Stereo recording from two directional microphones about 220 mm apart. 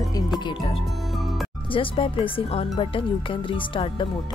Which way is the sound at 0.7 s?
Centre (ahead or behind).